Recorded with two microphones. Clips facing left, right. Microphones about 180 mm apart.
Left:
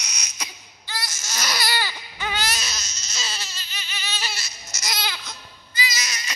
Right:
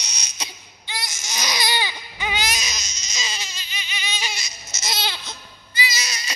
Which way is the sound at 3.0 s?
15° right (ahead or behind).